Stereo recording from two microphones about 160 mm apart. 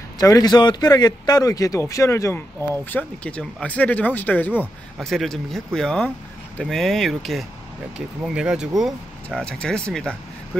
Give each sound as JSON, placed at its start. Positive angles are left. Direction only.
{"t": 0.2, "sound": "speech", "side_deg": 25}